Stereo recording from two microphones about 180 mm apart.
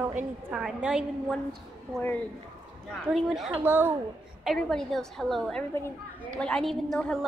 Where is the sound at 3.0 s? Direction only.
Centre (ahead or behind).